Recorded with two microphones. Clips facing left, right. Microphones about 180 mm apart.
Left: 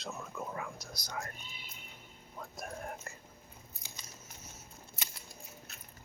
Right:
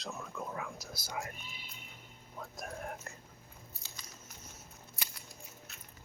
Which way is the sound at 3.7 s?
15° left (ahead or behind).